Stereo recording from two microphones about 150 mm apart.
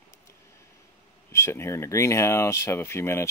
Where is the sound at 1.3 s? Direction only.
15° left (ahead or behind).